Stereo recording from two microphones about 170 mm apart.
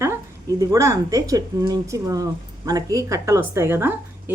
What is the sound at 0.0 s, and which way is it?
A woman's voice, 20° right (ahead or behind).